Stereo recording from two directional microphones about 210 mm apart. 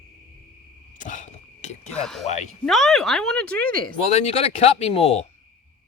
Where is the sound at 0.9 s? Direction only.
35° left (ahead or behind).